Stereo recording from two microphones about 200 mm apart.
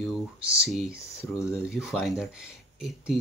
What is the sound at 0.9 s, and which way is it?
Speech, 15° left (ahead or behind).